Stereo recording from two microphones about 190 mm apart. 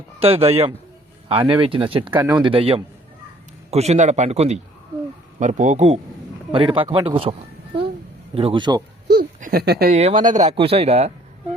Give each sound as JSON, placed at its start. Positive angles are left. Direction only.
{"t": 0.2, "sound": "a man's voice", "side_deg": -30}
{"t": 2.1, "sound": "speech", "side_deg": -15}
{"t": 2.4, "sound": "a man's voice", "side_deg": -30}
{"t": 8.4, "sound": "speech", "side_deg": -25}
{"t": 9.0, "sound": "speech", "side_deg": -50}
{"t": 9.9, "sound": "a man's voice", "side_deg": -35}
{"t": 10.5, "sound": "a man's voice", "side_deg": -30}